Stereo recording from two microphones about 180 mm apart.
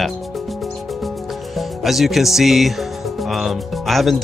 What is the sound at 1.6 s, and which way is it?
Speech, centre (ahead or behind).